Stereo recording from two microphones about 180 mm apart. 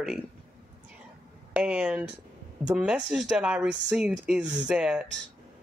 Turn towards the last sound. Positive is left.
turn(degrees=-5)  # may be behind; listen again after turning